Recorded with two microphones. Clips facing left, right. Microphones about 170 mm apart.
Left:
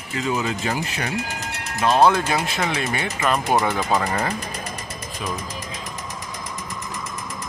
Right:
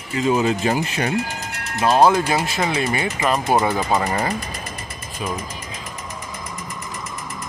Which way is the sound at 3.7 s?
20° right (ahead or behind).